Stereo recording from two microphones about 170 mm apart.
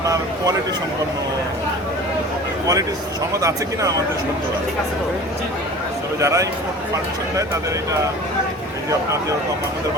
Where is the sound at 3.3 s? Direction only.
20° right (ahead or behind).